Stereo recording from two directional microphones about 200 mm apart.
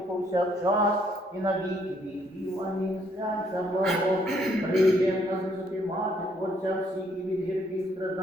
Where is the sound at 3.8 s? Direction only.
Centre (ahead or behind).